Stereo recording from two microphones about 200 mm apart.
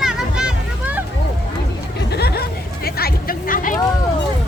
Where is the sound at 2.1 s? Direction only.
50° left (ahead or behind).